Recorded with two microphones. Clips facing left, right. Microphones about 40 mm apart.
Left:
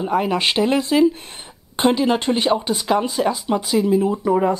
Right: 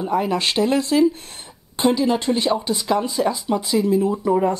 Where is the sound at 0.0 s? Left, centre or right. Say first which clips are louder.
Left 1 dB; centre.